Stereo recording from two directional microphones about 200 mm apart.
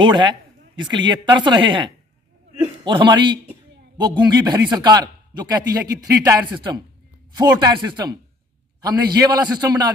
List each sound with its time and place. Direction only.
0.0 s a man's voice: 25° right (ahead or behind)